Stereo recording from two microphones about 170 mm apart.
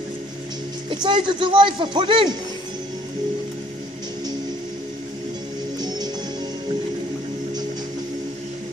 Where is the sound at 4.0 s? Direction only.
25° right (ahead or behind).